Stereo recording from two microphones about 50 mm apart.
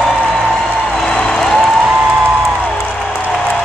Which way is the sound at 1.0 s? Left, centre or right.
Centre.